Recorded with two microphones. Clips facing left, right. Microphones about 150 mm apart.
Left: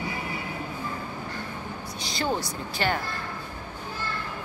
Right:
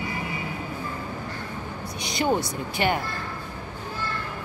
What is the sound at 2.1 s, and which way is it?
Speech, 20° right (ahead or behind).